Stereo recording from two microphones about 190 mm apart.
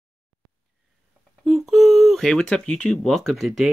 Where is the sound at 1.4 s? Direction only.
Centre (ahead or behind).